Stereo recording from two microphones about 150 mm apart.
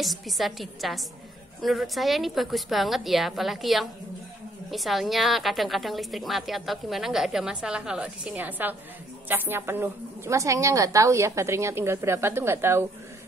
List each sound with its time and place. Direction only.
0.0 s a woman's voice: centre (ahead or behind); by 12.8 s 15° right (ahead or behind)